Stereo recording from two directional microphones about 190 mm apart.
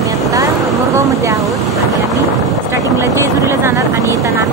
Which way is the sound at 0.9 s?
15° right (ahead or behind).